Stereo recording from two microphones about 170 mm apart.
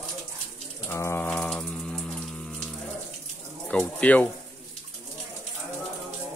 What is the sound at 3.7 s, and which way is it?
Speech, 5° left (ahead or behind).